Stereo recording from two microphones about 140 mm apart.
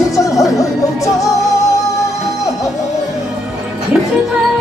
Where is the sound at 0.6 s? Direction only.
25° left (ahead or behind).